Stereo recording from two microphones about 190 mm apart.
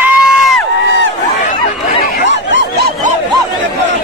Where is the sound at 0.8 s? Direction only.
90° right.